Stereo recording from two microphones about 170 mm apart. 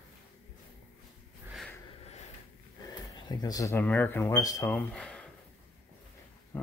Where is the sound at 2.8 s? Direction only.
20° left (ahead or behind).